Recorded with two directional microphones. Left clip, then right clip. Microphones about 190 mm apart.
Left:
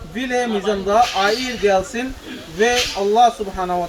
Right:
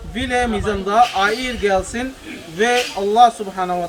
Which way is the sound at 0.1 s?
10° left (ahead or behind).